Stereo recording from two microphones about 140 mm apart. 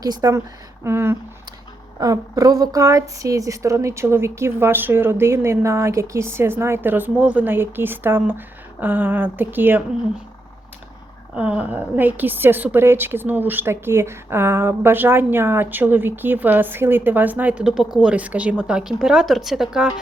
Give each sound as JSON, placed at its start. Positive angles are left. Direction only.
{"t": 0.0, "sound": "a woman's voice", "side_deg": -25}
{"t": 11.3, "sound": "a woman's voice", "side_deg": -10}